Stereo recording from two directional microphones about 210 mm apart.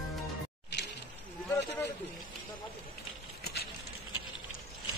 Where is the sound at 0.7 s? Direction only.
55° left (ahead or behind).